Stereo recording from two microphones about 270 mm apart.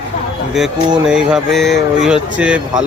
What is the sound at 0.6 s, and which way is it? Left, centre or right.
Speech, centre.